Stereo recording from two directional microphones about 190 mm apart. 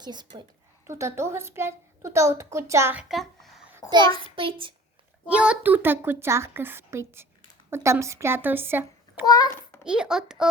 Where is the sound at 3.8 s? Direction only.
20° left (ahead or behind).